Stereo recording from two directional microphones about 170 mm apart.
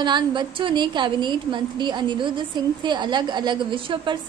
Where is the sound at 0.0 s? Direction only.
25° right (ahead or behind).